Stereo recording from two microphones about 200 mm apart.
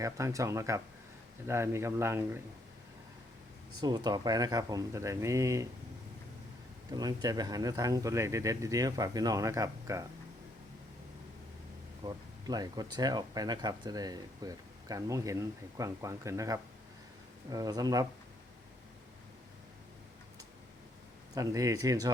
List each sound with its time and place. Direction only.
0.0 s speech: 15° right (ahead or behind)
3.8 s speech: 20° right (ahead or behind)
6.9 s speech: 20° right (ahead or behind)
12.0 s speech: 20° right (ahead or behind)
21.3 s speech: 15° right (ahead or behind)